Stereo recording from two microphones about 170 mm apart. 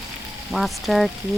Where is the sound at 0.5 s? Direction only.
Centre (ahead or behind).